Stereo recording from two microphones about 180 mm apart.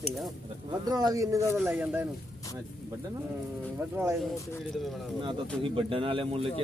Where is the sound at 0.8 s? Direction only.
20° right (ahead or behind).